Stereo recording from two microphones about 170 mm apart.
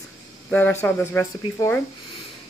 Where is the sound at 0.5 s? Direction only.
10° left (ahead or behind).